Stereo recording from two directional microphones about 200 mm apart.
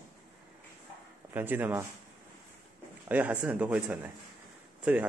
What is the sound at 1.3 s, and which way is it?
Speech, 10° right (ahead or behind).